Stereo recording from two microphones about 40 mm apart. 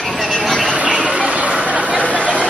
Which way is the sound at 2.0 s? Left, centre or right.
Left.